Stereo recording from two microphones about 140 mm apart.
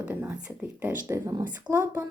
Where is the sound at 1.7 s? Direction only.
15° right (ahead or behind).